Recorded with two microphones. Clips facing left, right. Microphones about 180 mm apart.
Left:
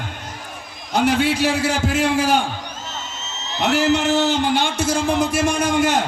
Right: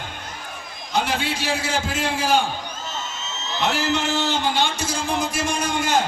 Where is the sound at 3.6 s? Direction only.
70° left (ahead or behind).